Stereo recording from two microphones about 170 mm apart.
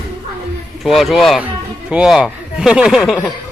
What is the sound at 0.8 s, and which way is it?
A man's voice, centre (ahead or behind).